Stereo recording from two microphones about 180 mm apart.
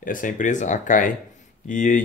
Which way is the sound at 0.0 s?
50° left (ahead or behind).